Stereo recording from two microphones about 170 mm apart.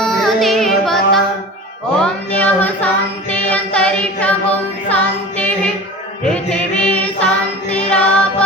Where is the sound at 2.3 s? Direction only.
10° left (ahead or behind).